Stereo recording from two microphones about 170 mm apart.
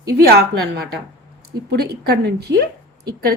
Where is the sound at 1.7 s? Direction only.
70° right (ahead or behind).